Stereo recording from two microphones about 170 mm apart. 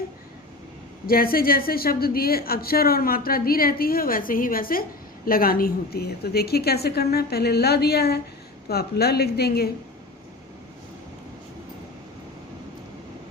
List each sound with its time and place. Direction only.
1.0 s a woman's voice: 60° left (ahead or behind)